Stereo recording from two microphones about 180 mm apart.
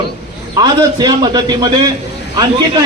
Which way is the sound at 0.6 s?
20° right (ahead or behind).